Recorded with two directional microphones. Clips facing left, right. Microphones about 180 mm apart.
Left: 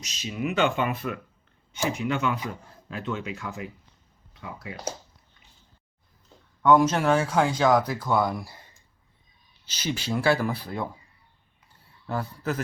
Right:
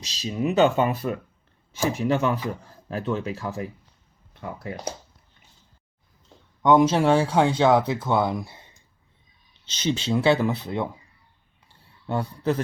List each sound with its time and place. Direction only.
0.0 s speech: 35° right (ahead or behind)
4.4 s speech: 50° right (ahead or behind)
6.6 s speech: 25° right (ahead or behind)
11.7 s a sound: 25° right (ahead or behind)